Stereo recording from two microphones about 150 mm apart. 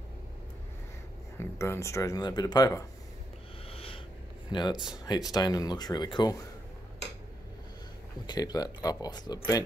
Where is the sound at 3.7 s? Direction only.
40° left (ahead or behind).